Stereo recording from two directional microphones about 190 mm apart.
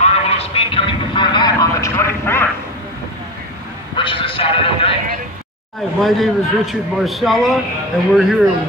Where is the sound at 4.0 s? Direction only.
25° left (ahead or behind).